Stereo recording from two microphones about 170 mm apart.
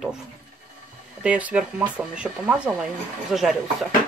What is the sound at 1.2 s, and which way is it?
Speech, 10° right (ahead or behind).